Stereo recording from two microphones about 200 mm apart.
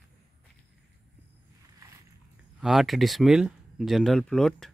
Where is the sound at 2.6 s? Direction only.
Centre (ahead or behind).